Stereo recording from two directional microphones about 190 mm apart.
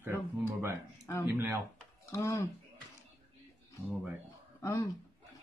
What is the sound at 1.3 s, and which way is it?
Speech, 10° right (ahead or behind).